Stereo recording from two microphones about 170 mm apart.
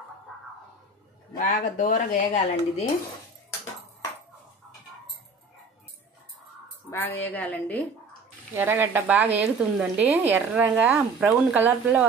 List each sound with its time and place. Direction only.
1.3 s speech: 50° left (ahead or behind)
6.9 s a woman's voice: 10° left (ahead or behind)
8.5 s a woman's voice: 10° right (ahead or behind)